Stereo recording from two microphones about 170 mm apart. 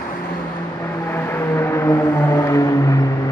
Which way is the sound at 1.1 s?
15° left (ahead or behind).